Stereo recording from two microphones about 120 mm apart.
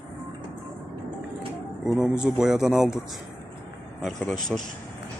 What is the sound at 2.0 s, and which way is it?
Speech, 5° right (ahead or behind).